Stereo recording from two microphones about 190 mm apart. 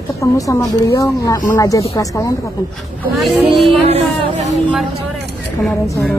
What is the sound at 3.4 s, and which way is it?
Speech, 30° right (ahead or behind).